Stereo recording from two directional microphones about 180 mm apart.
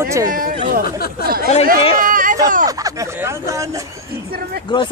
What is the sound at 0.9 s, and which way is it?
Speech, 60° left (ahead or behind).